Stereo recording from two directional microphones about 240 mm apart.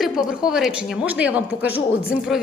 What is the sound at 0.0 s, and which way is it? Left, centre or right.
A woman's voice, centre.